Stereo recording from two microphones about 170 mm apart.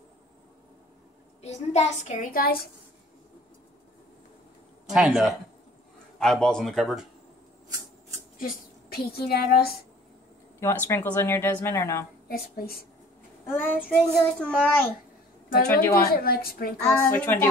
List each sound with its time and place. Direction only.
1.4 s a child's voice: 40° left (ahead or behind)
2.3 s a woman's voice: 60° left (ahead or behind)
4.9 s speech: centre (ahead or behind)
8.4 s a woman's voice: 60° left (ahead or behind)
10.6 s speech: 15° left (ahead or behind)
12.3 s a woman's voice: 65° left (ahead or behind)
13.5 s speech: 10° left (ahead or behind)
15.9 s a woman's voice: 60° left (ahead or behind)
16.9 s speech: 15° left (ahead or behind)